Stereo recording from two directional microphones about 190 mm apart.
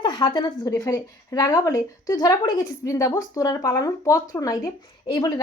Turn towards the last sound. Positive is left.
turn(degrees=20)  # may be behind; listen again after turning